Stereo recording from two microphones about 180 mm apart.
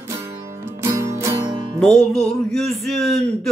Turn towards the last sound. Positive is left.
turn(degrees=0)  # may be behind; listen again after turning